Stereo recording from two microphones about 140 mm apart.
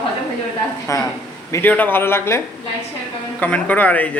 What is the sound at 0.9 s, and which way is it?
A man's voice, 20° left (ahead or behind).